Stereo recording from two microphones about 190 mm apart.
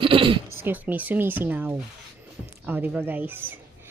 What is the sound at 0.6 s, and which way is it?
A woman's voice, 10° right (ahead or behind).